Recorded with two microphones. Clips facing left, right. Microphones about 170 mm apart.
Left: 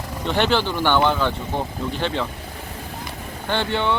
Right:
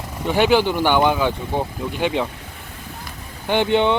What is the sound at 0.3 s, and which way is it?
Speech, 10° right (ahead or behind).